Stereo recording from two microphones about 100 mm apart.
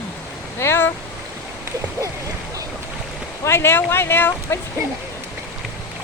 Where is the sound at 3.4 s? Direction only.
25° left (ahead or behind).